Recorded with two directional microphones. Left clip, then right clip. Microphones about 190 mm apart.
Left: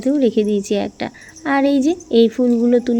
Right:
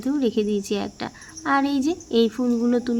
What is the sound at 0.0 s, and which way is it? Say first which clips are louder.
Speech: left 7 dB; 10° left (ahead or behind).